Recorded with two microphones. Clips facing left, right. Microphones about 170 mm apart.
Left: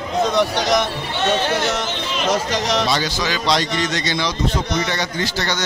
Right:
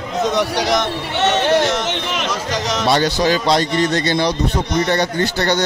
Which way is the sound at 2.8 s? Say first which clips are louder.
Right 5 dB; 60° right (ahead or behind).